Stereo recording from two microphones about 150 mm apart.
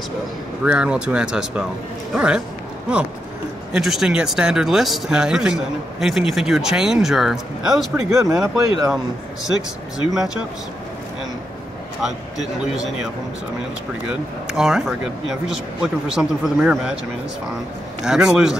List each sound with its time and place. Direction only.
0.7 s speech: 5° right (ahead or behind)
3.7 s speech: centre (ahead or behind)
7.9 s speech: 20° right (ahead or behind)
10.1 s speech: 5° right (ahead or behind)
12.7 s speech: centre (ahead or behind)
14.5 s speech: 5° right (ahead or behind)
18.0 s speech: 5° right (ahead or behind)